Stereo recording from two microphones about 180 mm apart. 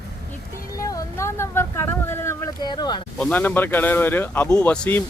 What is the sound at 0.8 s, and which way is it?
Vehicle, 15° left (ahead or behind).